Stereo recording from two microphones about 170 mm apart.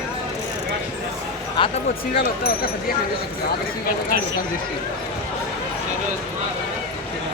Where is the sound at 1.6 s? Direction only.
30° left (ahead or behind).